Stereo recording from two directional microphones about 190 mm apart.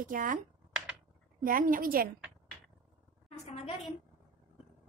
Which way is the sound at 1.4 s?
50° right (ahead or behind).